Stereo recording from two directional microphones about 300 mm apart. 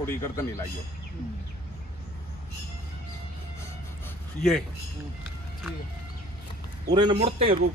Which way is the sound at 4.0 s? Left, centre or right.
Centre.